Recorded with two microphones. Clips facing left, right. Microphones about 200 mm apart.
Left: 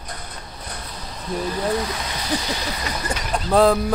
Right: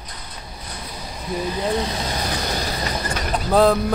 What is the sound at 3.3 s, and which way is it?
Speech, centre (ahead or behind).